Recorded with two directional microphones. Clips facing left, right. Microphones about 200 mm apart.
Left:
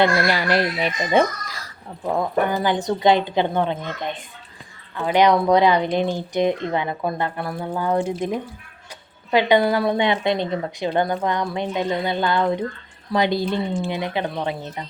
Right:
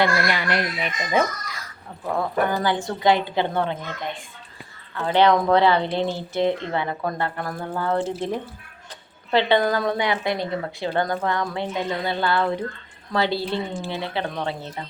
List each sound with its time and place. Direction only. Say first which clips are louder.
0.3 s speech: left 4 dB; 35° left (ahead or behind)
2.0 s a woman's voice: left 2 dB; 20° left (ahead or behind)
9.3 s speech: left 2 dB; 15° left (ahead or behind)
10.0 s a woman's voice: left 3 dB; 25° left (ahead or behind)